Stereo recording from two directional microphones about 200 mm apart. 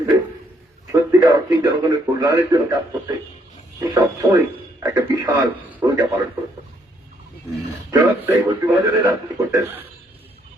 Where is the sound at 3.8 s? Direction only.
20° right (ahead or behind).